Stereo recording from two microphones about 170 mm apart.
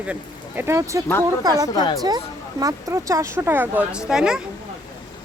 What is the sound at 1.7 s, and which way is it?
Speech, 25° left (ahead or behind).